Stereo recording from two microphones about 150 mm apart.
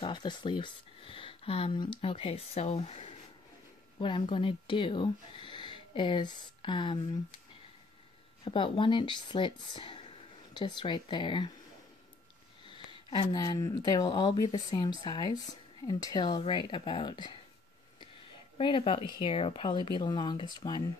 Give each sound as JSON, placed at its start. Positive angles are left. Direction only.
{"t": 0.0, "sound": "speech", "side_deg": 30}
{"t": 8.5, "sound": "speech", "side_deg": 35}
{"t": 12.6, "sound": "speech", "side_deg": 35}
{"t": 18.6, "sound": "speech", "side_deg": 35}